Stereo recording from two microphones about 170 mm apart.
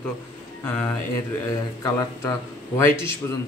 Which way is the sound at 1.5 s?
20° left (ahead or behind).